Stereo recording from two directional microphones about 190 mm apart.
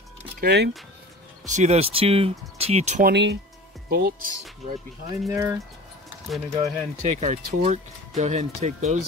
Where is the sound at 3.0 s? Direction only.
60° right (ahead or behind).